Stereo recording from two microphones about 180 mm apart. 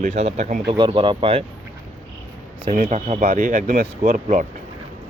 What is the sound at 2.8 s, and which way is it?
Speech, 40° right (ahead or behind).